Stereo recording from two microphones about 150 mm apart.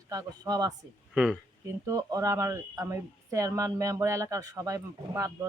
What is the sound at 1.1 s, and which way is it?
Speech, 5° right (ahead or behind).